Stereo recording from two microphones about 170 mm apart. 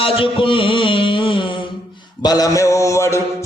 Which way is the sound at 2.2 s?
20° left (ahead or behind).